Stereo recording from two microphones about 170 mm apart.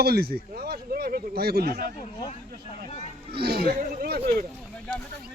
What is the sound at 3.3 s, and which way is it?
Speech, 65° right (ahead or behind).